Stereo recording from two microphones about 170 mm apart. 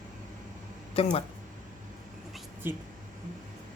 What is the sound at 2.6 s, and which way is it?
Speech, 15° right (ahead or behind).